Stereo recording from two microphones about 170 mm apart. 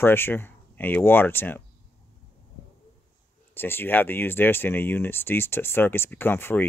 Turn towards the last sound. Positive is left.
turn(degrees=15)  # may be behind; listen again after turning